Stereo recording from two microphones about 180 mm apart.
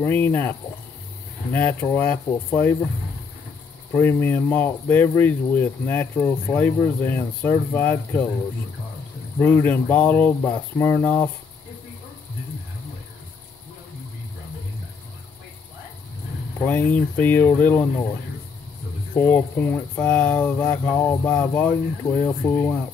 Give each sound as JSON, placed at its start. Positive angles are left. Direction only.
{"t": 0.0, "sound": "speech", "side_deg": 10}
{"t": 3.9, "sound": "speech", "side_deg": 15}
{"t": 9.4, "sound": "speech", "side_deg": 10}
{"t": 16.6, "sound": "speech", "side_deg": 10}
{"t": 19.1, "sound": "speech", "side_deg": 10}